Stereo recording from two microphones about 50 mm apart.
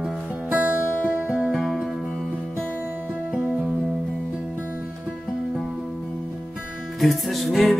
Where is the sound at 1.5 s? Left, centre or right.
Centre.